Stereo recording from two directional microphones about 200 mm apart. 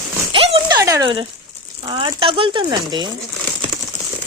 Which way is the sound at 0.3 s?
25° right (ahead or behind).